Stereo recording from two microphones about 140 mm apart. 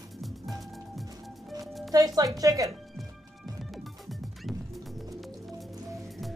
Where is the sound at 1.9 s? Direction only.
25° right (ahead or behind).